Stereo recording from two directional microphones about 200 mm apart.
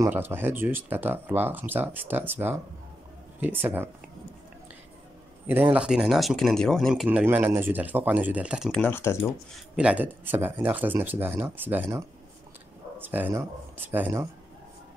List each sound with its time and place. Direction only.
0.0 s speech: 10° right (ahead or behind)
5.5 s speech: 10° right (ahead or behind); by 9.2 s 10° left (ahead or behind)
9.8 s speech: 5° right (ahead or behind)
13.0 s speech: 10° right (ahead or behind)